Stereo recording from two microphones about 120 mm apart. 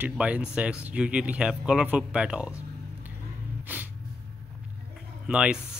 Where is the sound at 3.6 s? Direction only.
15° right (ahead or behind).